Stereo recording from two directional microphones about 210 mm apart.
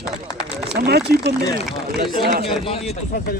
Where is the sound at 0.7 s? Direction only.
50° right (ahead or behind).